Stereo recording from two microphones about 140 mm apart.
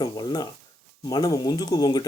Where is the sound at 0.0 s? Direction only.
30° left (ahead or behind).